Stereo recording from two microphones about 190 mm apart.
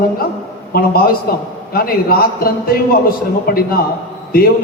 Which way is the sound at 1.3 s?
55° left (ahead or behind).